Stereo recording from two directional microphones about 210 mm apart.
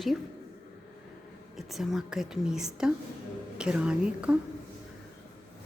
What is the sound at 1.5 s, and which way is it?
A woman's voice, centre (ahead or behind).